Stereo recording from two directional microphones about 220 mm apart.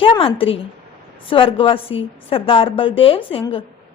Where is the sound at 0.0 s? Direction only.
25° left (ahead or behind).